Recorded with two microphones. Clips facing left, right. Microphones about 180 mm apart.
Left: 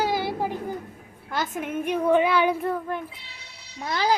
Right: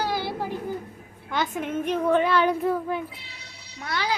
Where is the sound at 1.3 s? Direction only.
Centre (ahead or behind).